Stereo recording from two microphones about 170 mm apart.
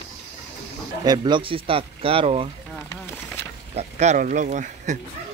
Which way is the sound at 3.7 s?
40° right (ahead or behind).